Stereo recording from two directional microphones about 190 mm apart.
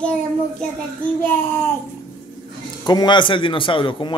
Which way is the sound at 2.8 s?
25° left (ahead or behind).